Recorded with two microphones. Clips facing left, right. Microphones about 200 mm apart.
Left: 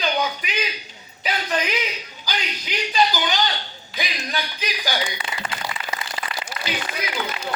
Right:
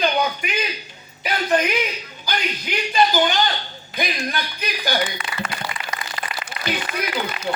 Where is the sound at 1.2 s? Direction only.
50° right (ahead or behind).